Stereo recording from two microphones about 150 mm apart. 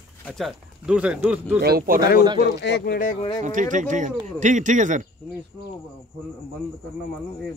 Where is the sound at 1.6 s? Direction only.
90° right.